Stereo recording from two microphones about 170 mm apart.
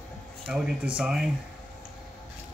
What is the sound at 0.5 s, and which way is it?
Speech, 5° right (ahead or behind).